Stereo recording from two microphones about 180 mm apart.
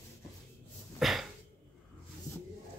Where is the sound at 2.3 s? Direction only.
15° left (ahead or behind).